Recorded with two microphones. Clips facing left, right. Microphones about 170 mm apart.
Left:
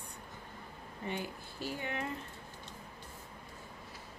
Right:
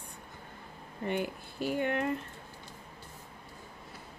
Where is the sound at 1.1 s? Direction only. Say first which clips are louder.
Right 7 dB; 60° right (ahead or behind).